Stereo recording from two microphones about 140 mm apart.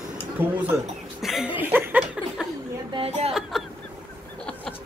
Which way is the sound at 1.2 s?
Centre (ahead or behind).